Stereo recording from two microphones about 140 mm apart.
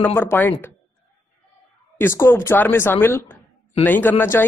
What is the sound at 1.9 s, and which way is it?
Speech, 20° left (ahead or behind).